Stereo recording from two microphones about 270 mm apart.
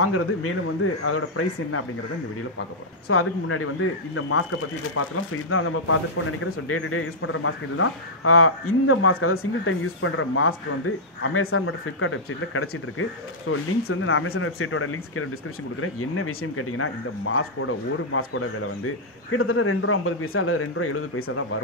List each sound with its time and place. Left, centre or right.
0.0 s speech: left
3.1 s speech: left